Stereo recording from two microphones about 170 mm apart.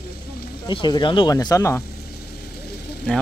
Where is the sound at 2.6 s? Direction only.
70° left (ahead or behind).